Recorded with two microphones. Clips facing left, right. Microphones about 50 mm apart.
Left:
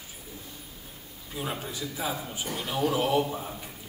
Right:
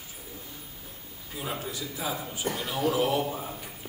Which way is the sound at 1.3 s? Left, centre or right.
Centre.